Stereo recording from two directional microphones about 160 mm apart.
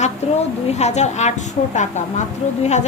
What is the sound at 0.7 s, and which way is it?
A woman's voice, 45° left (ahead or behind).